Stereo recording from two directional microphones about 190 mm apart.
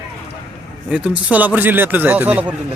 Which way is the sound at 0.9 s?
10° right (ahead or behind).